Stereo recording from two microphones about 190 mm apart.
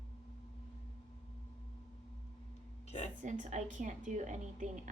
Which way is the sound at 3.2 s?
40° right (ahead or behind).